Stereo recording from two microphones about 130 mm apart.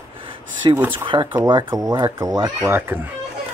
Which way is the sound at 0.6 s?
40° right (ahead or behind).